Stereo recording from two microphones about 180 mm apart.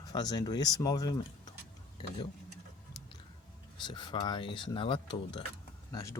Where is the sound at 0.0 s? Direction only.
20° left (ahead or behind).